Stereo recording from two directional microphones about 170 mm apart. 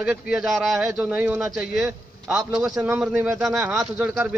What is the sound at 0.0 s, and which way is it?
Speech, 5° right (ahead or behind).